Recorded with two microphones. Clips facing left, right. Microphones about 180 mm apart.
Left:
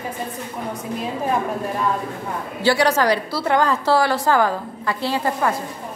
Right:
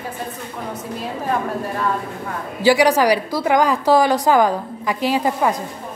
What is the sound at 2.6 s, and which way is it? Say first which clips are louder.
A woman's voice: right 3 dB; 15° right (ahead or behind).